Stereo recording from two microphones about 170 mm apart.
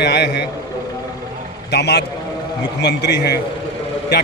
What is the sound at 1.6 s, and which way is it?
A man's voice, 80° left.